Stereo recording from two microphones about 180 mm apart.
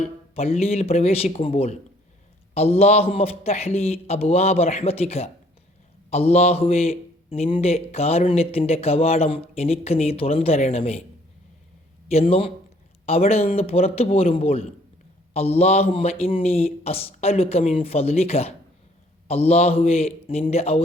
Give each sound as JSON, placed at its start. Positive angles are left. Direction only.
{"t": 0.0, "sound": "speech", "side_deg": 35}
{"t": 12.0, "sound": "speech", "side_deg": 35}